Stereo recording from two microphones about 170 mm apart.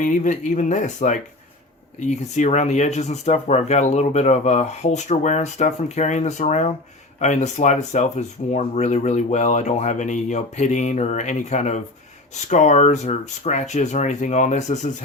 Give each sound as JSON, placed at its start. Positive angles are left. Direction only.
{"t": 0.0, "sound": "speech", "side_deg": 50}